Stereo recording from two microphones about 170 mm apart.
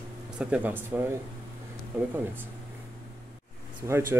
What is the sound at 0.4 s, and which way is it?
Speech, 5° right (ahead or behind).